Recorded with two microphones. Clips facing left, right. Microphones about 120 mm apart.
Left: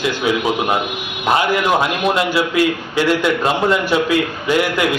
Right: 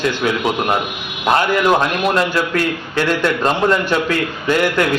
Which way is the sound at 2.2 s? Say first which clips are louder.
Left 1 dB; 10° left (ahead or behind).